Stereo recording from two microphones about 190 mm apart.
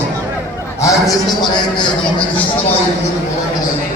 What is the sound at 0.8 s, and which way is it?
Speech, 15° left (ahead or behind).